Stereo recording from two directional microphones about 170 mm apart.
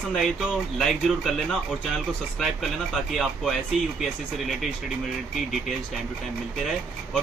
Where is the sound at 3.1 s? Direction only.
Centre (ahead or behind).